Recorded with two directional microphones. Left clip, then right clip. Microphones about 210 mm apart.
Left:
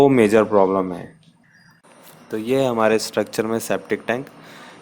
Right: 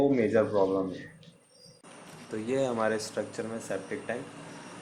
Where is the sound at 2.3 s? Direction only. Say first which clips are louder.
Left 10 dB; 35° left (ahead or behind).